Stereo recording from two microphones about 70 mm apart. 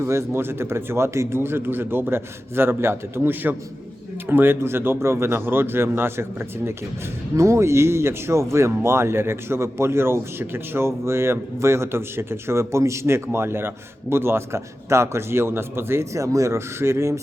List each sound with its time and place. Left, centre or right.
0.0 s speech: right
7.3 s speech: right